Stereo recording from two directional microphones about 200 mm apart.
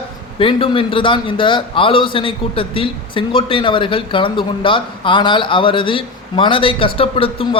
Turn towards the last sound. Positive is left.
turn(degrees=25)  # may be behind; listen again after turning